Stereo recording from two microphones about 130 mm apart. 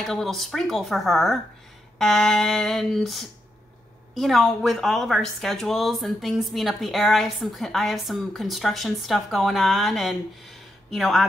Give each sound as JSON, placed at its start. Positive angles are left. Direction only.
{"t": 0.0, "sound": "a woman's voice", "side_deg": 0}